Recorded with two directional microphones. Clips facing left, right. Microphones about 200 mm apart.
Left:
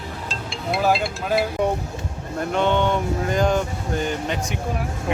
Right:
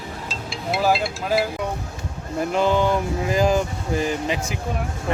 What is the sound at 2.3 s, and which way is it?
Speech, centre (ahead or behind).